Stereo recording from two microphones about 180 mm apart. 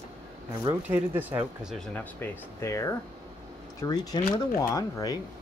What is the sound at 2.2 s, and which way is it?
Speech, 15° left (ahead or behind).